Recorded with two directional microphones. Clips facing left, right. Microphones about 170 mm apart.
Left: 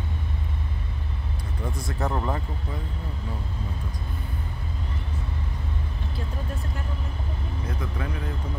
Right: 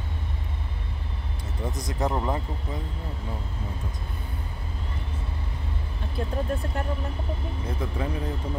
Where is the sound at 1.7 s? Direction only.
15° right (ahead or behind).